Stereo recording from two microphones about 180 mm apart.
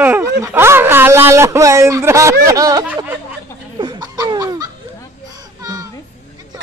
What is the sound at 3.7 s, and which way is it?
Laughter, 25° right (ahead or behind).